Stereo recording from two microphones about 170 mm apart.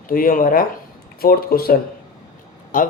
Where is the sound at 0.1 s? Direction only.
55° left (ahead or behind).